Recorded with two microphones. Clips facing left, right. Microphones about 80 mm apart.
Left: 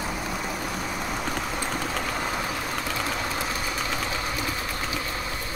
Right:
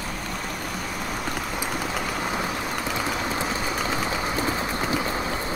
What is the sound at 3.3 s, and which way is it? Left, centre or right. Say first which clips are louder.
Vehicle: right 3 dB; right.